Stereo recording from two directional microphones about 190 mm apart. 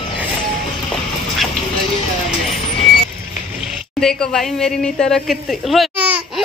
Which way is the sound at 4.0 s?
Centre (ahead or behind).